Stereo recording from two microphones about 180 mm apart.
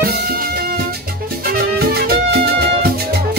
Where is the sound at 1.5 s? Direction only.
60° right (ahead or behind).